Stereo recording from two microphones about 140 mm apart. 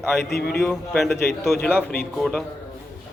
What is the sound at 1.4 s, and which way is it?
Speech, 15° left (ahead or behind).